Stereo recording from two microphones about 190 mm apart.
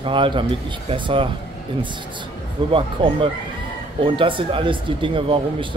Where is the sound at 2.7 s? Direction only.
25° right (ahead or behind).